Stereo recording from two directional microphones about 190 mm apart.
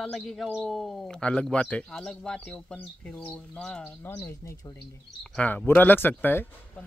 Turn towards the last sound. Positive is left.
turn(degrees=10)  # may be behind; listen again after turning